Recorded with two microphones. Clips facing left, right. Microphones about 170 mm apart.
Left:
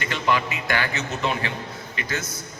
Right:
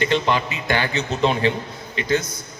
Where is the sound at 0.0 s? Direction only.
25° right (ahead or behind).